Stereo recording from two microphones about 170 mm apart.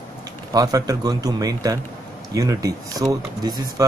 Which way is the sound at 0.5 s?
20° right (ahead or behind).